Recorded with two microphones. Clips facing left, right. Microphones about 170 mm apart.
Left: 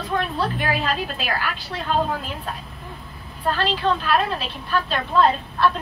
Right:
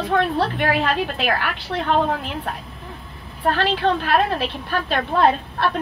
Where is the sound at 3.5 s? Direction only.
60° right (ahead or behind).